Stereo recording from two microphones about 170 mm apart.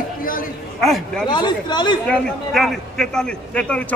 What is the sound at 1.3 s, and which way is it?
Speech, 25° left (ahead or behind).